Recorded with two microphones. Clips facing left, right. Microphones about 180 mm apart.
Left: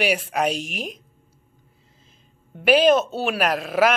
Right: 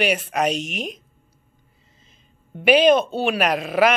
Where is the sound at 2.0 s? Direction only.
Centre (ahead or behind).